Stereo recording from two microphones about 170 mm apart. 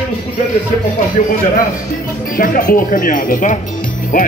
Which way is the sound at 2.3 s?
55° left (ahead or behind).